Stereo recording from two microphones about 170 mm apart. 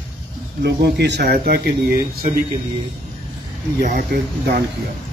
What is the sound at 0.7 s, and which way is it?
Speech, 80° right.